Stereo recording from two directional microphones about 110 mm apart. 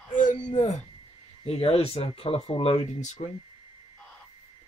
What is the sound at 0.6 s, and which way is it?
Speech, 90° left.